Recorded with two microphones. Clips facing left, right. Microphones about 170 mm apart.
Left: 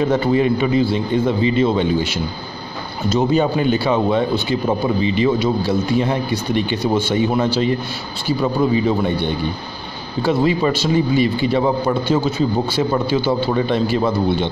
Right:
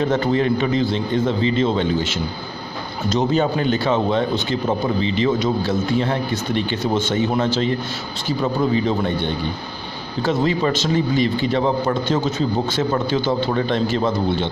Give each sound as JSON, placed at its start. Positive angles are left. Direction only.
{"t": 0.0, "sound": "speech", "side_deg": 10}